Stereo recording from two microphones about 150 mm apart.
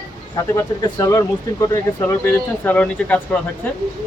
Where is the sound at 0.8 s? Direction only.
20° left (ahead or behind).